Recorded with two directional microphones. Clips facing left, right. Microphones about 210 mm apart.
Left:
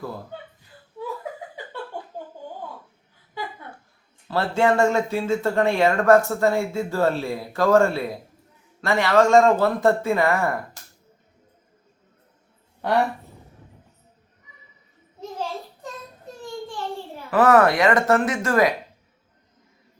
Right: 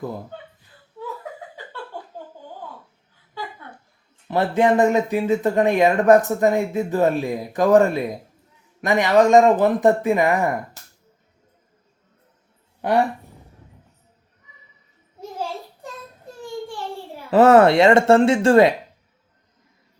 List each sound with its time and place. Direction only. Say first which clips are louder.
4.3 s speech: right 3 dB; 20° right (ahead or behind)
15.2 s a sound: right 1 dB; 10° right (ahead or behind)
17.3 s speech: right 4 dB; 25° right (ahead or behind)